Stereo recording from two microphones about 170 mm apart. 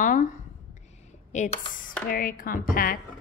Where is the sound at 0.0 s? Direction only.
50° left (ahead or behind).